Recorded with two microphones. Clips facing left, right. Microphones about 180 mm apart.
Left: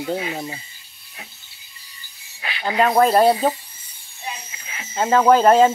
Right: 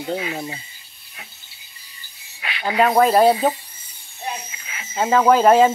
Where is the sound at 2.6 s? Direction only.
5° right (ahead or behind).